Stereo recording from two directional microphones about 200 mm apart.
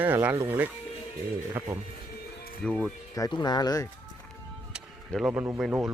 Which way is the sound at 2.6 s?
5° left (ahead or behind).